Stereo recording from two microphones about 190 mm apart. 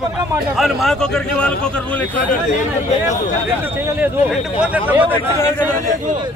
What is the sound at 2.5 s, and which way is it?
Speech, 40° left (ahead or behind).